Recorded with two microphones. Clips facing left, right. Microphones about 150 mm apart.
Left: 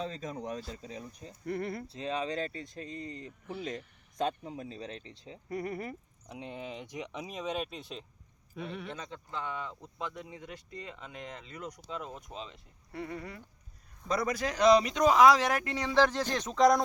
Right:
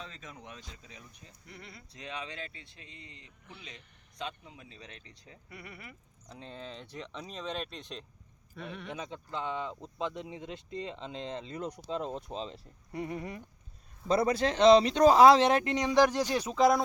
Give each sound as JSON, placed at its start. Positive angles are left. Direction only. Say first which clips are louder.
{"t": 0.0, "sound": "speech", "louder": "left 10 dB", "side_deg": 35}
{"t": 1.5, "sound": "speech", "louder": "left 16 dB", "side_deg": 55}
{"t": 1.9, "sound": "speech", "louder": "left 3 dB", "side_deg": 30}
{"t": 5.5, "sound": "speech", "louder": "left 13 dB", "side_deg": 40}
{"t": 6.2, "sound": "speech", "louder": "left 3 dB", "side_deg": 15}
{"t": 8.9, "sound": "speech", "louder": "right 2 dB", "side_deg": -15}
{"t": 12.9, "sound": "speech", "louder": "right 3 dB", "side_deg": -20}